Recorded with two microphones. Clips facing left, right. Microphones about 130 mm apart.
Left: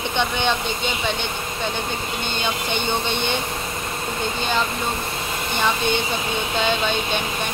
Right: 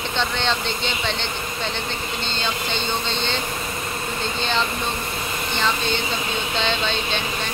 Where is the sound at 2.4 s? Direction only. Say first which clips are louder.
Left 2 dB; 15° left (ahead or behind).